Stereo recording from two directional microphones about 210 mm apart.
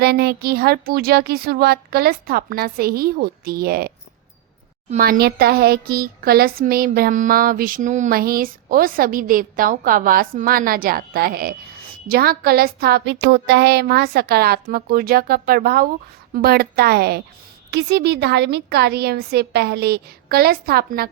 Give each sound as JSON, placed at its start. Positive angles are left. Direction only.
{"t": 0.0, "sound": "speech", "side_deg": -50}